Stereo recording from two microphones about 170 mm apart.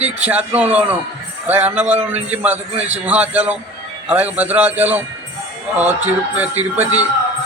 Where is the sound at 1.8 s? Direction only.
40° right (ahead or behind).